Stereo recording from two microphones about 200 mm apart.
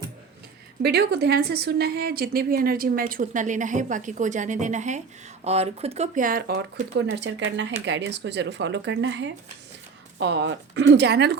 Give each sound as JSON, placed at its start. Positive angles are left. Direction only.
{"t": 0.8, "sound": "a woman's voice", "side_deg": -55}